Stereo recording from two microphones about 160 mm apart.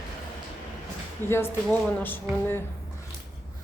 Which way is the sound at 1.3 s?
15° left (ahead or behind).